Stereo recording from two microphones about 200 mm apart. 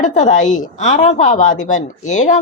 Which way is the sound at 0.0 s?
40° left (ahead or behind).